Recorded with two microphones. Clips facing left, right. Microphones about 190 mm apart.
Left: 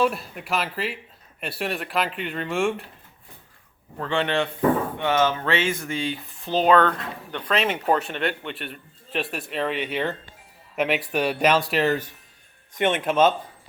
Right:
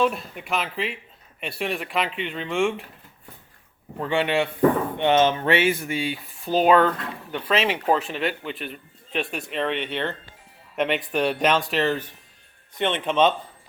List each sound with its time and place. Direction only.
0.0 s speech: 5° left (ahead or behind)
3.9 s speech: 10° right (ahead or behind)
4.9 s speech: 20° right (ahead or behind); by 13.3 s 5° left (ahead or behind)